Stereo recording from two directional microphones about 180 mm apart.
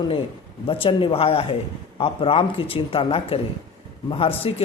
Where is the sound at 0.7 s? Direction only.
30° left (ahead or behind).